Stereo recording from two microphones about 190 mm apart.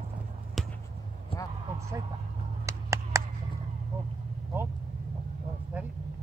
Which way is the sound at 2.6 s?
15° right (ahead or behind).